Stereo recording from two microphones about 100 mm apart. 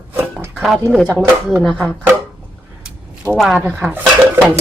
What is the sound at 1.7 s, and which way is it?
Speech, 10° left (ahead or behind).